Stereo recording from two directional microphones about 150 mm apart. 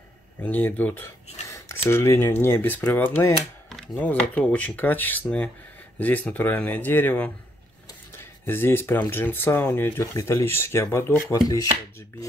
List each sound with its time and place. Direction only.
0.4 s speech: 10° left (ahead or behind)
11.2 s chopping: 25° left (ahead or behind)